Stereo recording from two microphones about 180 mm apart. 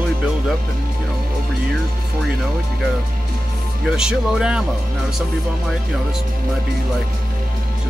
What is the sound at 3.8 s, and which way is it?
Music, 5° right (ahead or behind).